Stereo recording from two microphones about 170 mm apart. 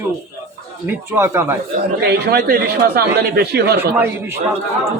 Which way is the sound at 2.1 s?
65° right (ahead or behind).